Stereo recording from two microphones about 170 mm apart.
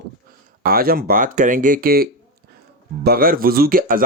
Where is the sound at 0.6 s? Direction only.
60° right (ahead or behind).